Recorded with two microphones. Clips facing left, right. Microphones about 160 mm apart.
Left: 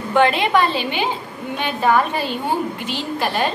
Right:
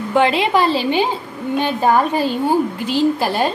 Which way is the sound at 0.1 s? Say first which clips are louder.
Right 1 dB; 25° right (ahead or behind).